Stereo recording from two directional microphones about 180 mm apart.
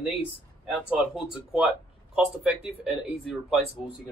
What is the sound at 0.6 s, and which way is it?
Speech, centre (ahead or behind).